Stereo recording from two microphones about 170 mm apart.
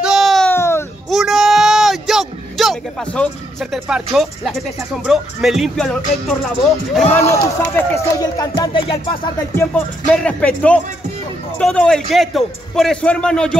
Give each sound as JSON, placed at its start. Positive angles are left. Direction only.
{"t": 0.0, "sound": "a sound", "side_deg": 0}
{"t": 0.5, "sound": "baby cry", "side_deg": 15}
{"t": 1.1, "sound": "a sound", "side_deg": 0}
{"t": 3.8, "sound": "speech", "side_deg": -5}
{"t": 7.1, "sound": "speech", "side_deg": 15}
{"t": 8.8, "sound": "music", "side_deg": 35}
{"t": 10.0, "sound": "speech", "side_deg": 5}